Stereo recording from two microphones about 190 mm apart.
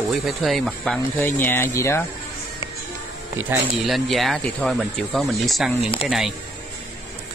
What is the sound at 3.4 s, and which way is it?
Speech, centre (ahead or behind).